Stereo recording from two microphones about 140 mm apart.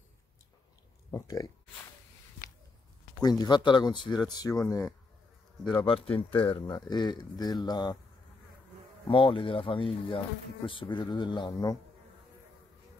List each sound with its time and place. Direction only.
1.1 s speech: 25° left (ahead or behind)
3.2 s speech: 30° left (ahead or behind)
4.4 s speech: 20° left (ahead or behind)
5.6 s speech: 10° left (ahead or behind)
6.1 s speech: 40° left (ahead or behind)
9.0 s speech: 40° left (ahead or behind)